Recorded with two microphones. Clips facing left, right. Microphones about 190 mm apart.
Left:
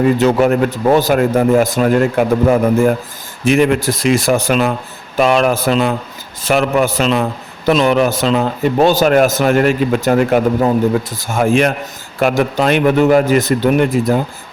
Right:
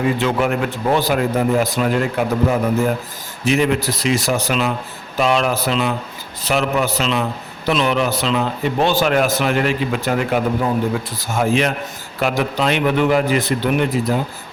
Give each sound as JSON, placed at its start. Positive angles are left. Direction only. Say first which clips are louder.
{"t": 0.2, "sound": "a man's voice", "louder": "left 7 dB", "side_deg": 40}